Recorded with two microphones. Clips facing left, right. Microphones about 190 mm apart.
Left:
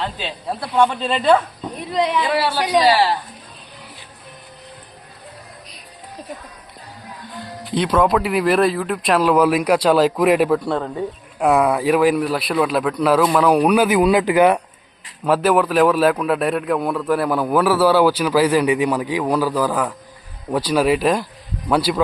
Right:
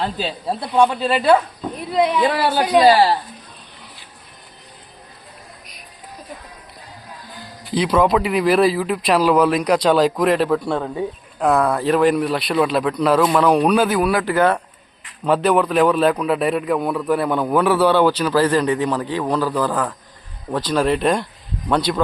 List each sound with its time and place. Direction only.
0.0 s speech: 40° right (ahead or behind)
0.7 s speech: 10° right (ahead or behind)
2.2 s a woman's voice: 50° right (ahead or behind)
7.6 s a man's voice: centre (ahead or behind); by 14.6 s 15° left (ahead or behind)
15.2 s a man's voice: 5° left (ahead or behind)